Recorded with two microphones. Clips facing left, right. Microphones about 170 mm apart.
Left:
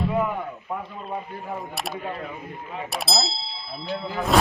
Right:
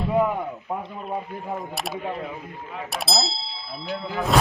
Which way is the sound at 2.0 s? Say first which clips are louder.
Right 2 dB; 15° right (ahead or behind).